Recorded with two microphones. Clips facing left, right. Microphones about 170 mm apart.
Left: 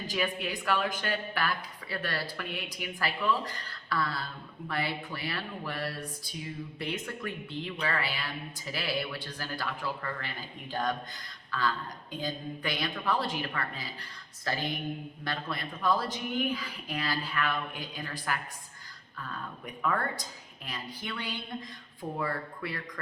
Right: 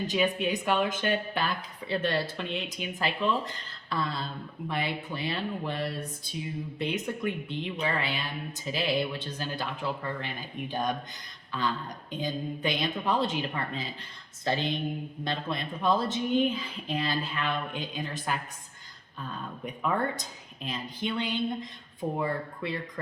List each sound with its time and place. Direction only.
0.1 s a woman's voice: 20° right (ahead or behind)